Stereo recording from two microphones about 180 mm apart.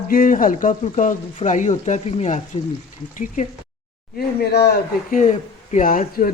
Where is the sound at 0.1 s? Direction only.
50° left (ahead or behind).